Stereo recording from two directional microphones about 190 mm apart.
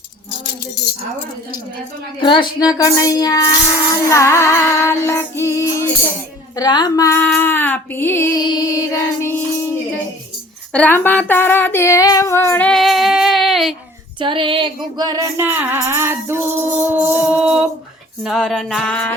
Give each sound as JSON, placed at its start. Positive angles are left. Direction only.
{"t": 0.8, "sound": "speech", "side_deg": 60}
{"t": 2.2, "sound": "speech", "side_deg": 25}
{"t": 4.1, "sound": "female singing", "side_deg": 15}
{"t": 14.2, "sound": "female singing", "side_deg": -25}
{"t": 14.9, "sound": "music", "side_deg": -20}